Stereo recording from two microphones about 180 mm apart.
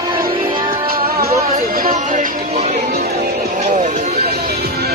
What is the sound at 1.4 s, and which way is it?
Music, 45° right (ahead or behind).